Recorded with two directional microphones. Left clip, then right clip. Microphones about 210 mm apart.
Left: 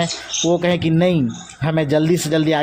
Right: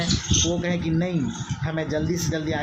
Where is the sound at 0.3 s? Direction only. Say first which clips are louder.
Left 3 dB; 15° left (ahead or behind).